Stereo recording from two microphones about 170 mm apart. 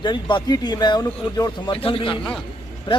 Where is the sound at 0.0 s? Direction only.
25° left (ahead or behind).